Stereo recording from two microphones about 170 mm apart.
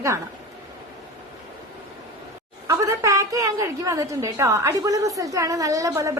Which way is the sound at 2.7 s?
20° right (ahead or behind).